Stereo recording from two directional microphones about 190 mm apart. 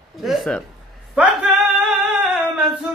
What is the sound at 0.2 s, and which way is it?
Speech, centre (ahead or behind).